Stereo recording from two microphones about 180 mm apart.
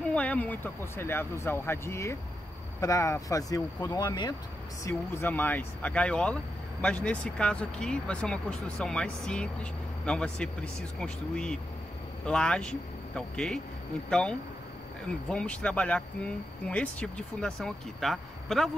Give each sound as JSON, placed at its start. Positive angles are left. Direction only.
{"t": 0.1, "sound": "speech", "side_deg": 5}
{"t": 4.8, "sound": "speech", "side_deg": 15}
{"t": 15.2, "sound": "speech", "side_deg": 5}